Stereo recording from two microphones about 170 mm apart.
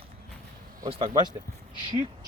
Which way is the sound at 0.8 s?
35° right (ahead or behind).